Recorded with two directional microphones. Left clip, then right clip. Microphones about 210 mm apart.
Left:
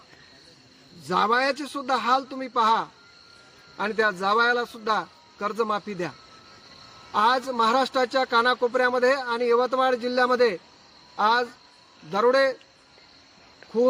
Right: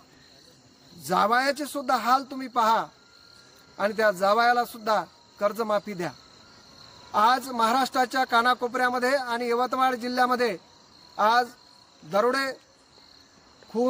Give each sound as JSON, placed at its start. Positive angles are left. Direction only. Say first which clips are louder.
{"t": 1.0, "sound": "speech", "louder": "even", "side_deg": -25}